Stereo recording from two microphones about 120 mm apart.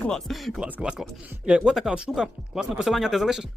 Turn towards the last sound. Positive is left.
turn(degrees=-5)  # may be behind; listen again after turning